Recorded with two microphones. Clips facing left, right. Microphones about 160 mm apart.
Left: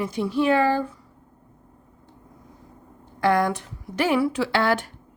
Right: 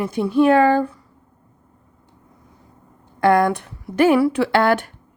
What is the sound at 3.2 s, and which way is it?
A woman's voice, 55° right (ahead or behind).